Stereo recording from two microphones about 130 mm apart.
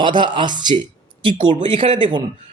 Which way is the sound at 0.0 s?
35° right (ahead or behind).